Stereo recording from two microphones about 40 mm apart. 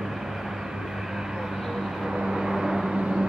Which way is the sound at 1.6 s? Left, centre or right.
Centre.